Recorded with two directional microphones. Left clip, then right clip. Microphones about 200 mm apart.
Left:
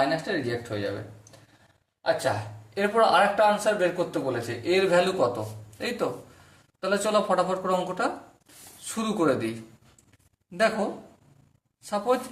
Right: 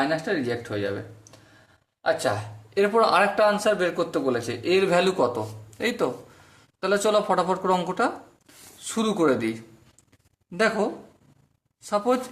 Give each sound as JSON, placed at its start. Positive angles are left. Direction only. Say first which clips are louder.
{"t": 0.3, "sound": "speech", "louder": "right 2 dB", "side_deg": -35}
{"t": 2.0, "sound": "speech", "louder": "right 1 dB", "side_deg": -40}
{"t": 11.8, "sound": "speech", "louder": "right 3 dB", "side_deg": -35}